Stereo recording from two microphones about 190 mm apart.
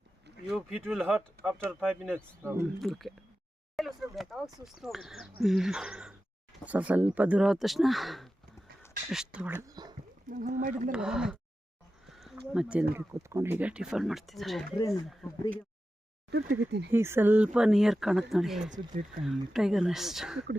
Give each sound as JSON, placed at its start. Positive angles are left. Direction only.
{"t": 0.5, "sound": "speech", "side_deg": -5}
{"t": 2.0, "sound": "speech", "side_deg": -10}
{"t": 2.7, "sound": "speech", "side_deg": 0}
{"t": 10.2, "sound": "speech", "side_deg": -45}
{"t": 10.9, "sound": "speech", "side_deg": -5}
{"t": 12.0, "sound": "a sound", "side_deg": 0}
{"t": 12.9, "sound": "speech", "side_deg": -15}
{"t": 15.2, "sound": "speech", "side_deg": 15}
{"t": 16.3, "sound": "speech", "side_deg": -60}
{"t": 16.9, "sound": "speech", "side_deg": -10}